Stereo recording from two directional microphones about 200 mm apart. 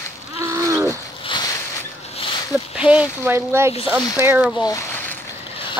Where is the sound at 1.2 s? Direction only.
20° left (ahead or behind).